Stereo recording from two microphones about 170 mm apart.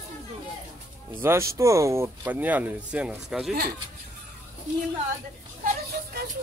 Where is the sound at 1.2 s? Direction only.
15° right (ahead or behind).